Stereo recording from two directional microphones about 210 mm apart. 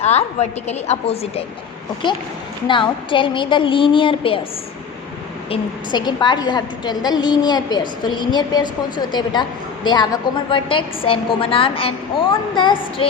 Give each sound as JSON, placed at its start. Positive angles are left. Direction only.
{"t": 0.0, "sound": "a woman's voice", "side_deg": 30}
{"t": 5.5, "sound": "a woman's voice", "side_deg": 20}